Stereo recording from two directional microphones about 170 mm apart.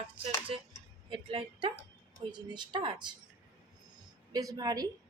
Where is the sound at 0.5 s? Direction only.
35° right (ahead or behind).